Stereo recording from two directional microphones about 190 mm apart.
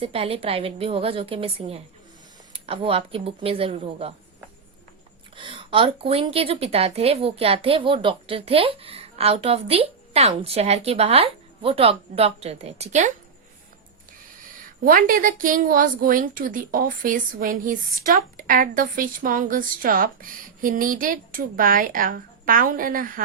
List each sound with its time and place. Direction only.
0.0 s a woman's voice: 30° right (ahead or behind)
5.4 s a woman's voice: 30° right (ahead or behind)
14.8 s a woman's voice: 45° right (ahead or behind)